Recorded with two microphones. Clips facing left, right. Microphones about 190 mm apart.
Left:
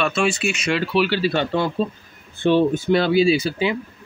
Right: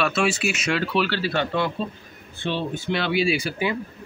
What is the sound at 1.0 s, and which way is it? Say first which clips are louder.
Speech: left 4 dB; 20° left (ahead or behind).